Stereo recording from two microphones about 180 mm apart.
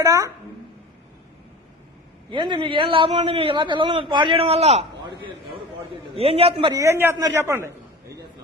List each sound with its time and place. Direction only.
0.0 s a man's voice: 15° right (ahead or behind)
2.3 s a man's voice: 25° right (ahead or behind)
6.1 s a man's voice: 35° right (ahead or behind); by 7.7 s 15° right (ahead or behind)